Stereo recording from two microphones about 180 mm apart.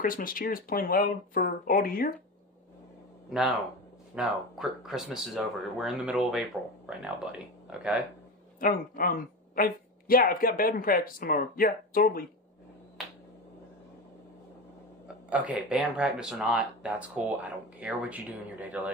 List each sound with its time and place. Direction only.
0.0 s speech: 50° left (ahead or behind)
3.3 s speech: centre (ahead or behind)
8.5 s speech: 50° left (ahead or behind)
15.2 s speech: 10° right (ahead or behind)